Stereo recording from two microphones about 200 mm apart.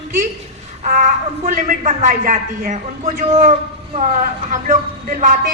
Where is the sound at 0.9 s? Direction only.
40° right (ahead or behind).